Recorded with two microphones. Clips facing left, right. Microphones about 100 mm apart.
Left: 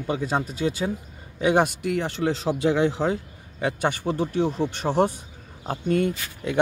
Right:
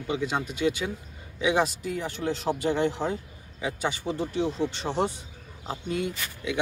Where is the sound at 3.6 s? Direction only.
60° left (ahead or behind).